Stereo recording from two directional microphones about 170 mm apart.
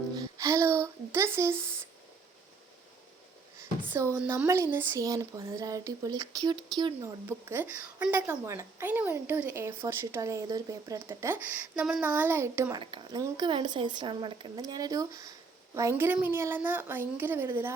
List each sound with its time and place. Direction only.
0.2 s a sound: 20° right (ahead or behind)
3.8 s a woman's voice: 15° right (ahead or behind)
7.3 s a woman's voice: 15° right (ahead or behind)
12.8 s a woman's voice: 25° right (ahead or behind)